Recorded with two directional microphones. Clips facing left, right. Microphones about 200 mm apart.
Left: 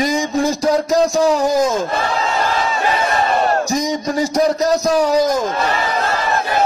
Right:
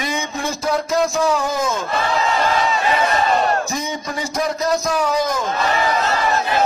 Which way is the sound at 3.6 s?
40° left (ahead or behind).